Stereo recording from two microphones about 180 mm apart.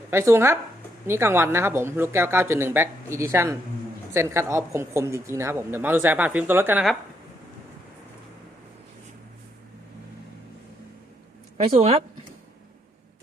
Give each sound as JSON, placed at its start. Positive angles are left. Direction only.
{"t": 0.1, "sound": "speech", "side_deg": -15}
{"t": 11.5, "sound": "speech", "side_deg": -35}